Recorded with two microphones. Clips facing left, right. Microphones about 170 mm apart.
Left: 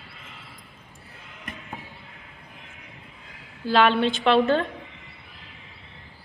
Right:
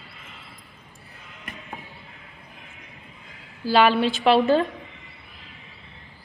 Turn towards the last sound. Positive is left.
turn(degrees=-5)  # may be behind; listen again after turning